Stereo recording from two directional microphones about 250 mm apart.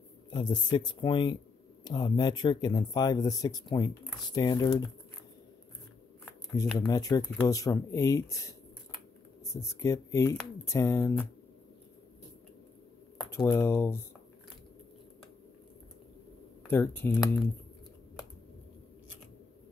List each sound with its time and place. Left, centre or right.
0.3 s speech: centre
6.2 s speech: centre
9.6 s speech: centre
13.3 s speech: centre
16.6 s speech: centre